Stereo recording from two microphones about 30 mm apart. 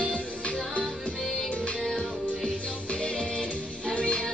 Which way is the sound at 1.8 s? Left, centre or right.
Centre.